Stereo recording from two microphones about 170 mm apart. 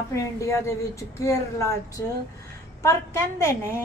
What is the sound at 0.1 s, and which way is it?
A woman's voice, 20° left (ahead or behind).